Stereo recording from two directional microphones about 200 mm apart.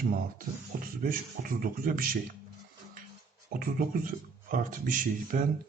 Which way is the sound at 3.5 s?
45° right (ahead or behind).